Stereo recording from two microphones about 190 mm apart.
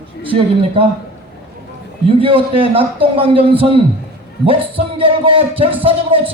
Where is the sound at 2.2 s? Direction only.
30° right (ahead or behind).